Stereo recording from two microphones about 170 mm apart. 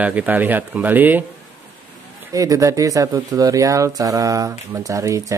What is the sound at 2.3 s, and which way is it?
Speech, 20° right (ahead or behind).